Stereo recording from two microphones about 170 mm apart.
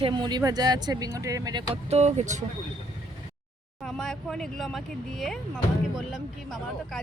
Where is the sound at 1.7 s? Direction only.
40° right (ahead or behind).